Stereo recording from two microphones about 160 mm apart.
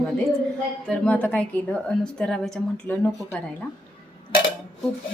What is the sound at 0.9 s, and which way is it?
A woman's voice, 10° left (ahead or behind).